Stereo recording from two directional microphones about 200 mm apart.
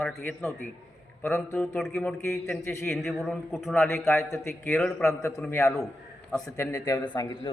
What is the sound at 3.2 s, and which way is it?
Speech, centre (ahead or behind).